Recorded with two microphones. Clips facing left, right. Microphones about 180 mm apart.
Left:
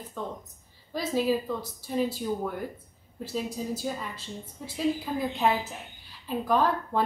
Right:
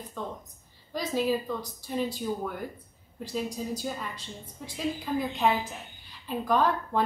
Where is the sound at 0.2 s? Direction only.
Centre (ahead or behind).